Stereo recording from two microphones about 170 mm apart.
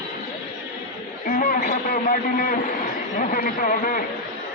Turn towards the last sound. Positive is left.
turn(degrees=55)  # may be behind; listen again after turning